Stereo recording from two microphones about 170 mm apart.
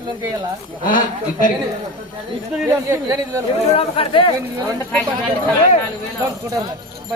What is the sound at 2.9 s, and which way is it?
Speech, 20° right (ahead or behind).